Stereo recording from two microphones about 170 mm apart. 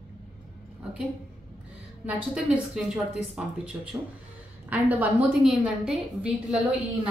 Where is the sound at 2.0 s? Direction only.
5° right (ahead or behind).